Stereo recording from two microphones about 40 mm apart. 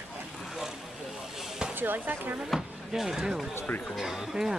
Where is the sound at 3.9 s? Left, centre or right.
Centre.